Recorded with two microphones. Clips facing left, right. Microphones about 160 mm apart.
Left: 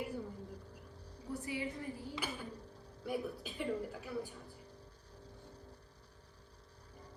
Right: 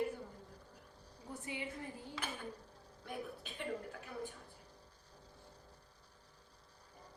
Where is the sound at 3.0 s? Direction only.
5° left (ahead or behind).